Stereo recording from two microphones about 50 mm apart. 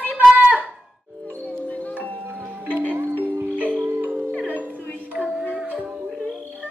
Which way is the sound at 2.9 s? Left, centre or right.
Right.